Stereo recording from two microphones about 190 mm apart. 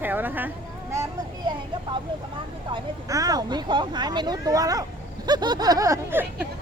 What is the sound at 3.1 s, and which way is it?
Speech, 20° right (ahead or behind).